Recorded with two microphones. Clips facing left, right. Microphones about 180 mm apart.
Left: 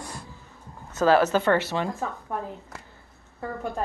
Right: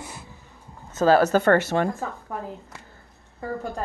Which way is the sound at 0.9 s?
30° right (ahead or behind).